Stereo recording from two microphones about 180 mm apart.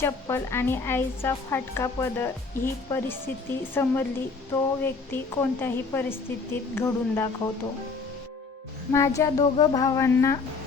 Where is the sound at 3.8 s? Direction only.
15° left (ahead or behind).